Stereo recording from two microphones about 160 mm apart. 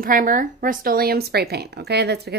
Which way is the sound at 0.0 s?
60° right (ahead or behind).